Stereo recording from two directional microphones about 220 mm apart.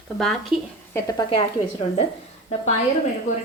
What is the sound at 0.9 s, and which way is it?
A woman's voice, 15° left (ahead or behind).